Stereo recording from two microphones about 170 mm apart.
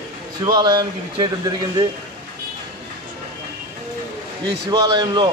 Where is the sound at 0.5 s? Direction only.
25° right (ahead or behind).